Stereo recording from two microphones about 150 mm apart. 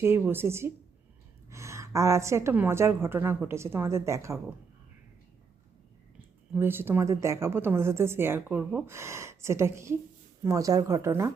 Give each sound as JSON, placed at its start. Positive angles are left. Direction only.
{"t": 0.0, "sound": "a woman's voice", "side_deg": -15}
{"t": 6.5, "sound": "a woman's voice", "side_deg": -15}